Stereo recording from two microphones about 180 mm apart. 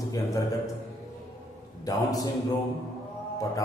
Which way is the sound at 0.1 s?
20° left (ahead or behind).